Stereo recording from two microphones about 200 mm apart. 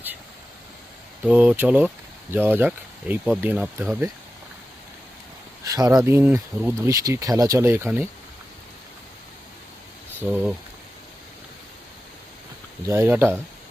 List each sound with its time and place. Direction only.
1.2 s speech: 5° right (ahead or behind)
5.6 s speech: 15° right (ahead or behind)
10.2 s speech: centre (ahead or behind)
12.8 s speech: 10° right (ahead or behind)